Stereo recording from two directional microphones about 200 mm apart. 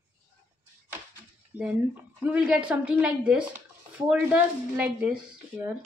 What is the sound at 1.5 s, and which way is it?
A woman's voice, 10° right (ahead or behind).